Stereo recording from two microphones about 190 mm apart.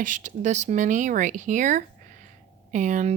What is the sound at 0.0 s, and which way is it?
Speech, 40° right (ahead or behind).